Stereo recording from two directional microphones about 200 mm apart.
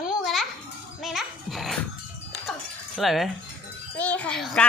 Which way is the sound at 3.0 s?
Centre (ahead or behind).